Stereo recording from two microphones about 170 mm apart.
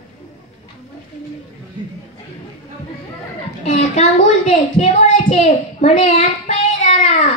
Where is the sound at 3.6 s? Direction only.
40° left (ahead or behind).